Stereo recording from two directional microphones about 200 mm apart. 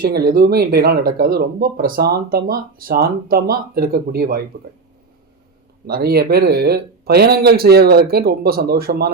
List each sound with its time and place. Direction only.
0.0 s speech: 50° right (ahead or behind)
5.8 s speech: 50° right (ahead or behind)